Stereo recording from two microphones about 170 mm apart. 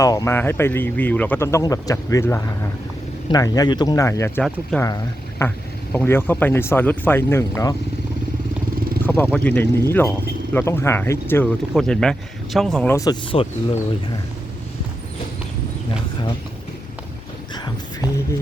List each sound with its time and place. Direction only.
0.0 s speech: 20° left (ahead or behind)
9.0 s speech: 10° left (ahead or behind)
12.9 s speech: 20° left (ahead or behind)
13.3 s speech: 30° left (ahead or behind)